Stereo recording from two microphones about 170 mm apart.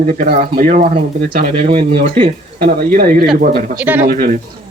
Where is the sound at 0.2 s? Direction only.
60° right (ahead or behind).